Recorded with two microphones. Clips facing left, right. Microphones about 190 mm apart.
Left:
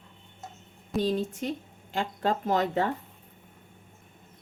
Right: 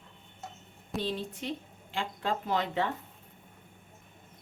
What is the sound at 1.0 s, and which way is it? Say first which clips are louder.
Speech: left 7 dB; 45° left (ahead or behind).